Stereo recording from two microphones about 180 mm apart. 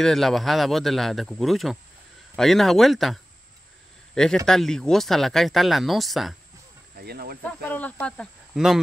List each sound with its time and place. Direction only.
0.0 s a man's voice: centre (ahead or behind)
7.0 s speech: 60° right (ahead or behind)
7.6 s speech: 10° left (ahead or behind)